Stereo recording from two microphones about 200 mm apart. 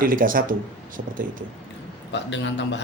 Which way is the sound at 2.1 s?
60° left (ahead or behind).